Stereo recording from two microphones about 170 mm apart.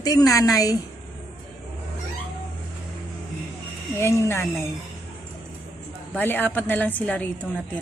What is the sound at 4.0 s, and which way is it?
Speech, 15° left (ahead or behind).